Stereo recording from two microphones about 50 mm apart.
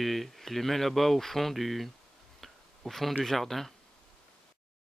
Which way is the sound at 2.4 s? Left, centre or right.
Centre.